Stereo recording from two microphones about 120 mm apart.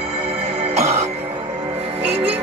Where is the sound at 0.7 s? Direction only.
60° right (ahead or behind).